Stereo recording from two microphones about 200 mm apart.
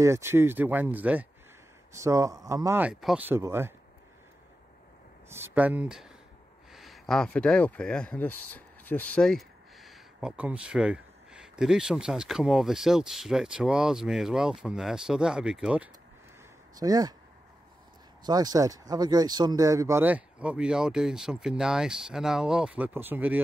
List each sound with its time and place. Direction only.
0.0 s speech: 15° right (ahead or behind)
5.3 s speech: 10° right (ahead or behind)
16.8 s speech: 20° right (ahead or behind)
18.2 s speech: 20° right (ahead or behind)